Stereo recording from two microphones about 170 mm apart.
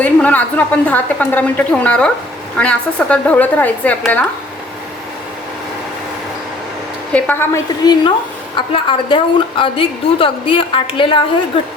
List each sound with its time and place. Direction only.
0.0 s a woman's voice: 10° left (ahead or behind)
7.1 s a woman's voice: 10° left (ahead or behind)
8.5 s a woman's voice: 30° left (ahead or behind)